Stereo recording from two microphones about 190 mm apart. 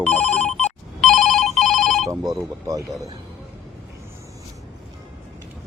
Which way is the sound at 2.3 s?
15° right (ahead or behind).